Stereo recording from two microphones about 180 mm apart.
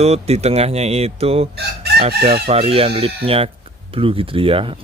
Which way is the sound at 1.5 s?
65° right (ahead or behind).